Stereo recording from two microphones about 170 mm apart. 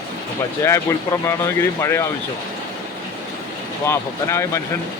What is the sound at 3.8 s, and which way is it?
Speech, 15° left (ahead or behind).